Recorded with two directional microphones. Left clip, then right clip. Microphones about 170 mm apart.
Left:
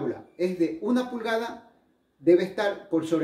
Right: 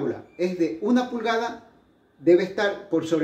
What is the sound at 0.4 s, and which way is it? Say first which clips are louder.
Speech: right 2 dB; centre (ahead or behind).